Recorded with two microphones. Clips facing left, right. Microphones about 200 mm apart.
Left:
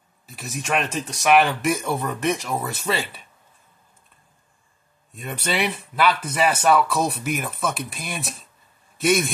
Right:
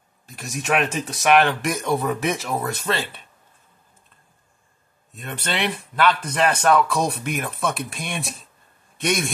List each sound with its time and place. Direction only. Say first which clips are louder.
0.3 s speech: right 2 dB; centre (ahead or behind)
5.1 s a man's voice: left 2 dB; 10° left (ahead or behind)